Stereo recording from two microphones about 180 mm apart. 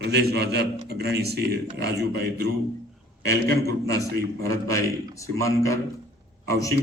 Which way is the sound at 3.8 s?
20° left (ahead or behind).